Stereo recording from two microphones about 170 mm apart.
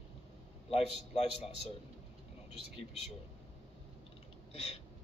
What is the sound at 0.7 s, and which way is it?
Speech, 35° left (ahead or behind).